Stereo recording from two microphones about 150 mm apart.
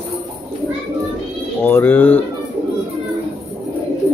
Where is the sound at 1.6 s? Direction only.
10° left (ahead or behind).